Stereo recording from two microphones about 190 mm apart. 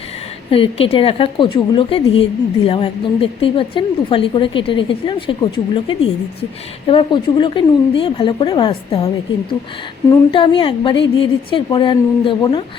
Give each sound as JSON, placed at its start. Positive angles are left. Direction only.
{"t": 0.5, "sound": "a woman's voice", "side_deg": 30}
{"t": 10.1, "sound": "a woman's voice", "side_deg": 25}